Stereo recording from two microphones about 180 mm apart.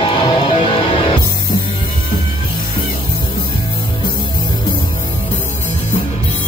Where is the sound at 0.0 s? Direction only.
25° left (ahead or behind).